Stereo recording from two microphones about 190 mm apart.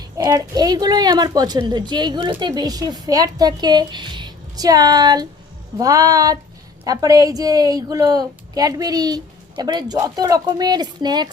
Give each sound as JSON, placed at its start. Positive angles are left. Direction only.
{"t": 0.0, "sound": "a woman's voice", "side_deg": -20}